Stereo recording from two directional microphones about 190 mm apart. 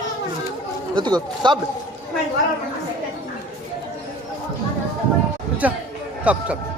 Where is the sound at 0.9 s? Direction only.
25° right (ahead or behind).